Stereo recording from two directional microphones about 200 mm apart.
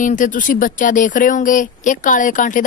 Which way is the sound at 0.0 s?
40° left (ahead or behind).